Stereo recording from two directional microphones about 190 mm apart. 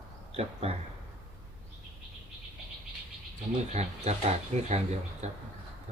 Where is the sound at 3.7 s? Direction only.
35° right (ahead or behind).